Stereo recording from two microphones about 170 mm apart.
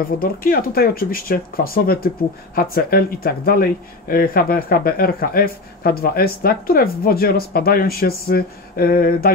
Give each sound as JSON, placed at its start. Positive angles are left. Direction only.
{"t": 0.2, "sound": "speech", "side_deg": 60}